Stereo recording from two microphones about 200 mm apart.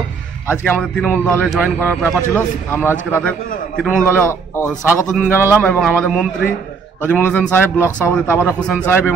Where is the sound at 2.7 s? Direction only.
10° left (ahead or behind).